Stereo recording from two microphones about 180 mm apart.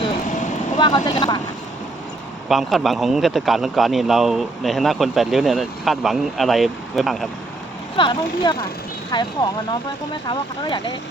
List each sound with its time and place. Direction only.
0.8 s speech: 25° left (ahead or behind)
2.5 s speech: centre (ahead or behind)
7.9 s speech: 25° left (ahead or behind)